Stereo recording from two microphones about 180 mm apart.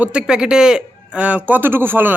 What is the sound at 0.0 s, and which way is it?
A man's voice, 5° right (ahead or behind).